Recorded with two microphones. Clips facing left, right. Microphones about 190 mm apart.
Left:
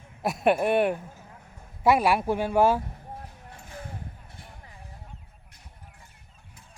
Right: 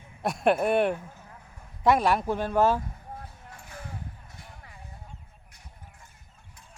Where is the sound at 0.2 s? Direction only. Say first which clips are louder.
Left 1 dB; 5° left (ahead or behind).